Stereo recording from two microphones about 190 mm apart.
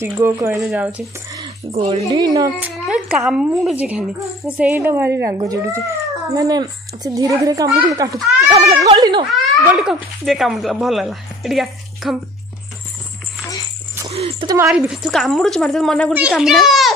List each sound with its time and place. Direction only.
0.0 s a child's voice: 15° right (ahead or behind)
1.7 s a child's voice: 30° right (ahead or behind)
2.0 s speech: 20° right (ahead or behind)
2.6 s a child's voice: 5° right (ahead or behind)
8.5 s a child's voice: 35° right (ahead or behind)
9.3 s speech: centre (ahead or behind)
14.1 s a child's voice: 30° right (ahead or behind)
14.7 s speech: centre (ahead or behind)